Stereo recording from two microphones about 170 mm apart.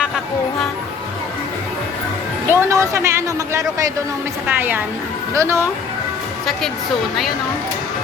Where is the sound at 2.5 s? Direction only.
15° right (ahead or behind).